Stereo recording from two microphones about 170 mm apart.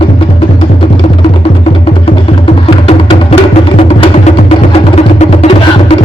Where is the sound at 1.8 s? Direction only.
35° left (ahead or behind).